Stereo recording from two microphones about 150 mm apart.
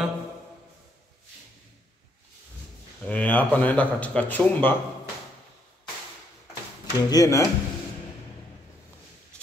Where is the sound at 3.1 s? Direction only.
10° left (ahead or behind).